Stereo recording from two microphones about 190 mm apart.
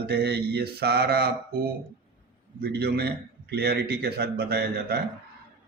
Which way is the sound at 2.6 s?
60° right (ahead or behind).